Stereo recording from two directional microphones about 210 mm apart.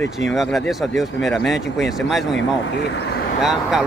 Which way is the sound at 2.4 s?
55° left (ahead or behind).